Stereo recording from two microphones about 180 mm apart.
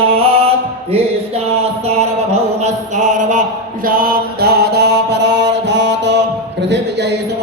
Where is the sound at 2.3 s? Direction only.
40° right (ahead or behind); by 6.2 s 80° right.